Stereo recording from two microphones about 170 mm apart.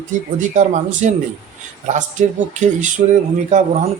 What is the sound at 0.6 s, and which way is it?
Speech, 45° right (ahead or behind).